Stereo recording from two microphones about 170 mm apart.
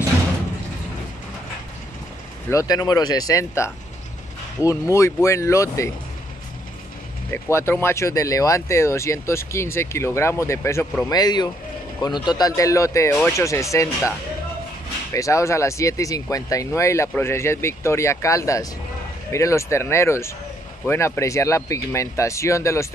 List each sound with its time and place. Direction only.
2.5 s speech: 20° left (ahead or behind)
7.2 s speech: 15° left (ahead or behind)
15.1 s speech: 20° left (ahead or behind)